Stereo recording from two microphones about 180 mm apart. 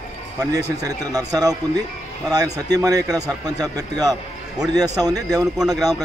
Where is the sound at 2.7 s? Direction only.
20° right (ahead or behind).